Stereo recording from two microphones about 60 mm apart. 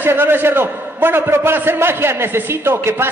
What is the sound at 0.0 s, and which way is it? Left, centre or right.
A man's voice, right.